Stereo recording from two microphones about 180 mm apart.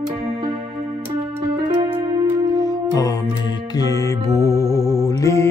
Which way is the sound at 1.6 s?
30° right (ahead or behind).